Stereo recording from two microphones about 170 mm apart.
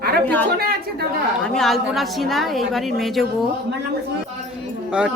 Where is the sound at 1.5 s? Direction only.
Centre (ahead or behind).